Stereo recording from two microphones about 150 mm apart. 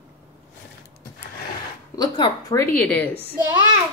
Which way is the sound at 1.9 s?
25° left (ahead or behind).